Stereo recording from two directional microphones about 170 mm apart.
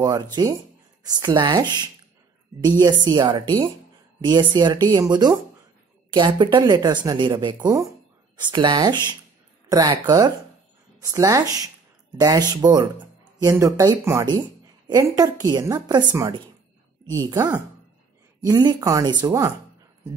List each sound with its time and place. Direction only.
0.0 s speech: 20° right (ahead or behind)
7.5 s speech: 20° right (ahead or behind)